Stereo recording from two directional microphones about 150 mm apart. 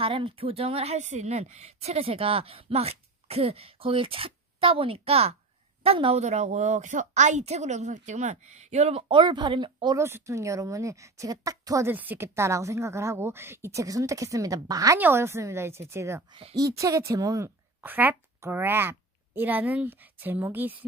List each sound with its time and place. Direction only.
0.0 s a woman's voice: 35° right (ahead or behind)
9.1 s a woman's voice: 30° right (ahead or behind)
9.9 s a woman's voice: 15° right (ahead or behind)